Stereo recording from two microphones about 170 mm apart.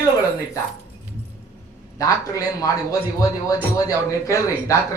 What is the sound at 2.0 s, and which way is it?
Speech, 20° left (ahead or behind).